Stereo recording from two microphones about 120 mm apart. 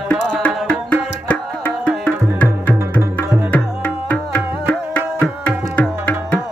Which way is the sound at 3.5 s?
15° left (ahead or behind).